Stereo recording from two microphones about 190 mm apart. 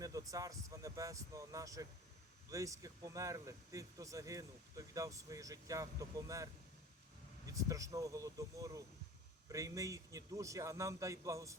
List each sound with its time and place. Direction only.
0.0 s speech: 15° right (ahead or behind)